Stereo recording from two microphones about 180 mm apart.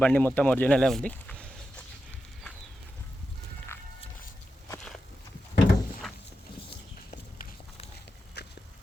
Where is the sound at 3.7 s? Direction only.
10° left (ahead or behind).